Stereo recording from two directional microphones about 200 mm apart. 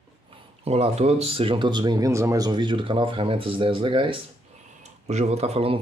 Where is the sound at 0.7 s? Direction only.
30° right (ahead or behind).